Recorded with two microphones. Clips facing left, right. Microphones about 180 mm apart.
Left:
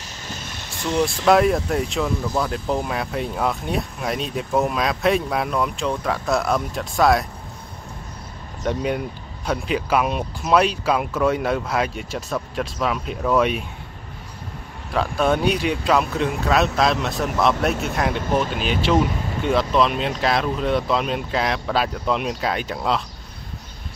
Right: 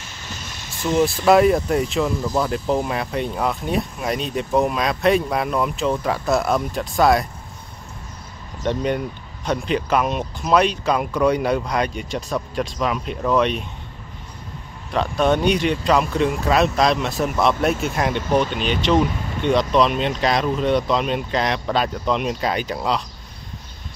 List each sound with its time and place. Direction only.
0.5 s vehicle: 55° left (ahead or behind)
0.7 s speech: centre (ahead or behind)
8.6 s speech: 5° left (ahead or behind)
15.0 s speech: 5° left (ahead or behind)